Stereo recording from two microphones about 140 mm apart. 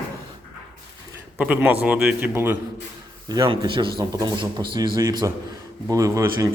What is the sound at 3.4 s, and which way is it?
A man's voice, 35° right (ahead or behind).